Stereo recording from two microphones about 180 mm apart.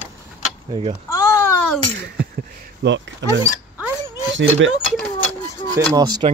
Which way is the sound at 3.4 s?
10° right (ahead or behind).